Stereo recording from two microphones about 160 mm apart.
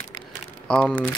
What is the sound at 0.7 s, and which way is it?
Speech, 10° left (ahead or behind).